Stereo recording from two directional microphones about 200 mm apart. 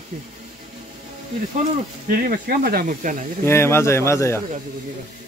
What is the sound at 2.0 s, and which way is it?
Speech, 45° right (ahead or behind).